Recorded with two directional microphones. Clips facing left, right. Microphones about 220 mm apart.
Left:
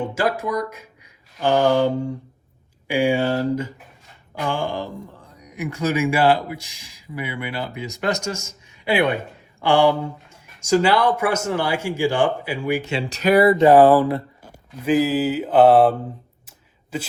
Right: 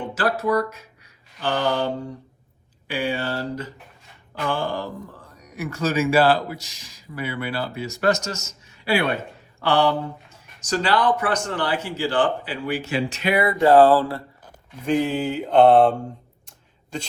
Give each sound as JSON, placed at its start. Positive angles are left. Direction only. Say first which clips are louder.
{"t": 0.0, "sound": "speech", "louder": "left 1 dB", "side_deg": 10}
{"t": 13.1, "sound": "speech", "louder": "left 9 dB", "side_deg": 40}
{"t": 13.6, "sound": "speech", "louder": "right 2 dB", "side_deg": 15}
{"t": 14.8, "sound": "mantra", "louder": "left 3 dB", "side_deg": 5}
{"t": 16.5, "sound": "a sound", "louder": "left 3 dB", "side_deg": 5}